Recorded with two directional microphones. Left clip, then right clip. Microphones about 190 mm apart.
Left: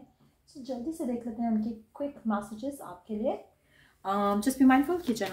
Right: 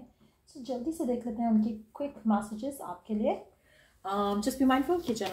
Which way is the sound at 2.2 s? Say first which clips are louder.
Right 4 dB; 5° right (ahead or behind).